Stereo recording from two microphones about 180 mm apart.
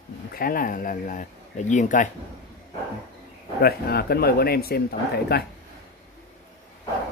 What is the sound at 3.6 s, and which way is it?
Speech, 60° left (ahead or behind).